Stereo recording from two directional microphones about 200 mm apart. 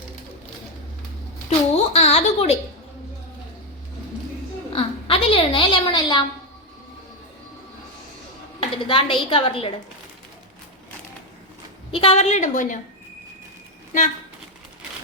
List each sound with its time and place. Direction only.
1.5 s a woman's voice: 30° left (ahead or behind)
4.7 s a woman's voice: 25° left (ahead or behind)
8.9 s a woman's voice: 25° left (ahead or behind)
11.9 s a woman's voice: 30° left (ahead or behind)